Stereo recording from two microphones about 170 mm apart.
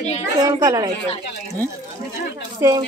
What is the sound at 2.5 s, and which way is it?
Speech, 20° right (ahead or behind).